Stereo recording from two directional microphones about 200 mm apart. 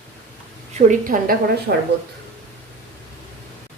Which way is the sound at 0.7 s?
45° right (ahead or behind).